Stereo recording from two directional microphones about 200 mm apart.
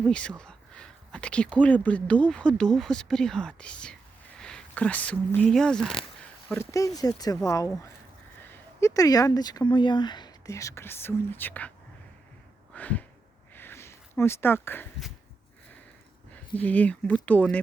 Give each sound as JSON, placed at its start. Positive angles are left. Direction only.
{"t": 0.0, "sound": "speech", "side_deg": 5}
{"t": 4.4, "sound": "a sound", "side_deg": 5}
{"t": 5.3, "sound": "speech", "side_deg": 5}
{"t": 6.5, "sound": "speech", "side_deg": 15}
{"t": 12.7, "sound": "a sound", "side_deg": 5}
{"t": 16.3, "sound": "speech", "side_deg": 5}